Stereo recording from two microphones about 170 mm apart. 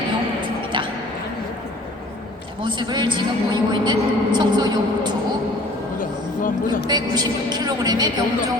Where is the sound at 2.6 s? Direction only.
30° right (ahead or behind).